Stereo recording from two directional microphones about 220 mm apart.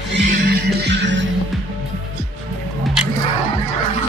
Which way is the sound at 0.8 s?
50° right (ahead or behind).